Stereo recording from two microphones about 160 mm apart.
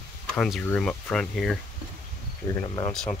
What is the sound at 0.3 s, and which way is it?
Speech, 5° left (ahead or behind).